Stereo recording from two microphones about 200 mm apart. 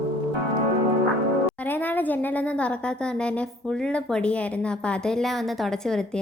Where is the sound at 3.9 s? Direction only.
5° left (ahead or behind).